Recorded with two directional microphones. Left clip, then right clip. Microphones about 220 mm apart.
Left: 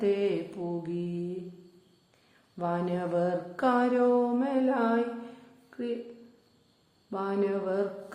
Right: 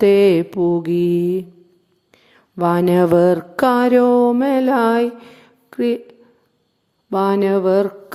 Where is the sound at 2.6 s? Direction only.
50° right (ahead or behind).